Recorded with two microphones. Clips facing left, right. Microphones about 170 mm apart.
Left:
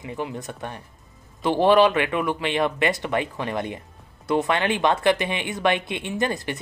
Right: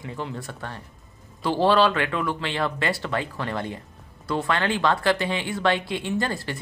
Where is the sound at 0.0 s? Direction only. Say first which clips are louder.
Left 2 dB; 20° left (ahead or behind).